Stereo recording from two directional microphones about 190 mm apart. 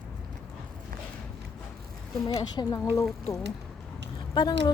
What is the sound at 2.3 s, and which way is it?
Speech, 20° left (ahead or behind).